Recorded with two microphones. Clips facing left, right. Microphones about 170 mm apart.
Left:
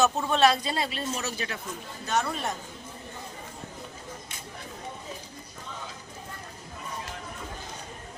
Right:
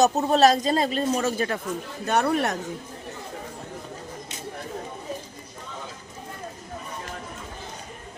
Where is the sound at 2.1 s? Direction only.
60° right (ahead or behind).